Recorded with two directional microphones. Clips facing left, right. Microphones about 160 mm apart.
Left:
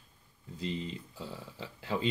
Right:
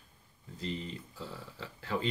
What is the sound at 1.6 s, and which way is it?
Speech, 15° left (ahead or behind).